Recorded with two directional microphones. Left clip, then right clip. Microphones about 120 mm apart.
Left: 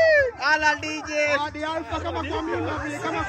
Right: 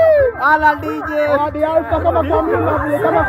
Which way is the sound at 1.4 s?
45° right (ahead or behind).